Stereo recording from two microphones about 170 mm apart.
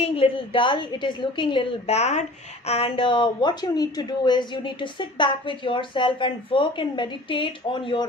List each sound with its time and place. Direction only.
0.0 s a woman's voice: 30° left (ahead or behind)